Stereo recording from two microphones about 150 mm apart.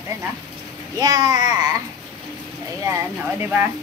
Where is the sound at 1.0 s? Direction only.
25° right (ahead or behind).